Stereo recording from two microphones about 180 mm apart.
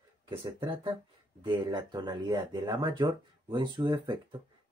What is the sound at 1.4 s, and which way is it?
Speech, 25° right (ahead or behind).